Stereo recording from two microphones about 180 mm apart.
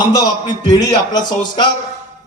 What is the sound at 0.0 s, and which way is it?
Speech, 25° left (ahead or behind).